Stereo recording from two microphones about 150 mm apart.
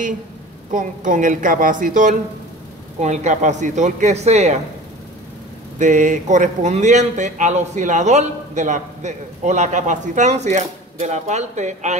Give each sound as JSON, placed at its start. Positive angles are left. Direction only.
{"t": 0.7, "sound": "a woman's voice", "side_deg": -60}
{"t": 5.8, "sound": "speech", "side_deg": -55}